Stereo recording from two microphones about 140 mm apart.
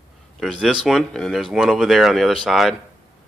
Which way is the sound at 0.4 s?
Centre (ahead or behind).